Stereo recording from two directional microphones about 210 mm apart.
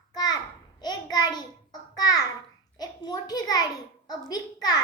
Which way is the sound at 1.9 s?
20° left (ahead or behind).